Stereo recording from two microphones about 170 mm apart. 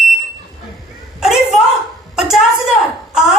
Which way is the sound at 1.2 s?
Centre (ahead or behind).